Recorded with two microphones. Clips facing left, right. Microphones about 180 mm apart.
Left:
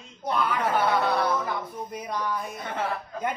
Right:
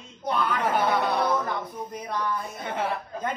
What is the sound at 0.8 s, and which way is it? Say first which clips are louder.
Speech: left 1 dB; 15° right (ahead or behind).